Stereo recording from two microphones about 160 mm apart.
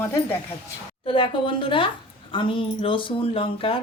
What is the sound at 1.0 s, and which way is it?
Speech, 35° left (ahead or behind).